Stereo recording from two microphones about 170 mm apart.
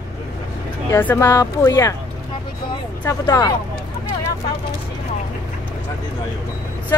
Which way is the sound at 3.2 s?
25° left (ahead or behind).